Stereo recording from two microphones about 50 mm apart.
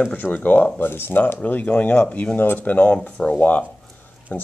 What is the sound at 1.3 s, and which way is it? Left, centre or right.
Speech, left.